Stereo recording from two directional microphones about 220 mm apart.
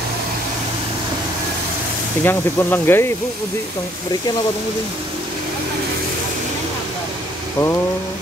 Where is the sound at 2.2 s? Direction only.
10° left (ahead or behind).